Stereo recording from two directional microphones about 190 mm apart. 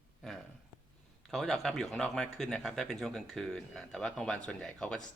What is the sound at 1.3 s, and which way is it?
Speech, centre (ahead or behind).